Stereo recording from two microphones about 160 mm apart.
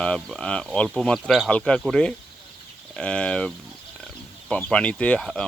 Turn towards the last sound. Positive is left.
turn(degrees=5)  # may be behind; listen again after turning